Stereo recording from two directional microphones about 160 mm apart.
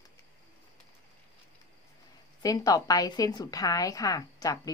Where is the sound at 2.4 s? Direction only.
25° left (ahead or behind).